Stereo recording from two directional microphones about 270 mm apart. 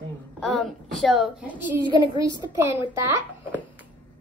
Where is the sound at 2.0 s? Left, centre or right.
Centre.